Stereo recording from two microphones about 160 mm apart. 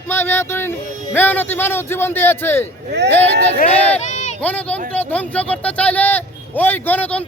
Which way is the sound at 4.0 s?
50° left (ahead or behind).